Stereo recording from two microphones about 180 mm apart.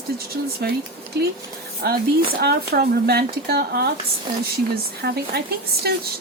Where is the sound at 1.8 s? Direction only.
60° right (ahead or behind).